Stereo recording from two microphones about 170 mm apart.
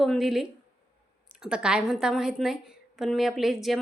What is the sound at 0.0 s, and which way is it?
A woman's voice, centre (ahead or behind).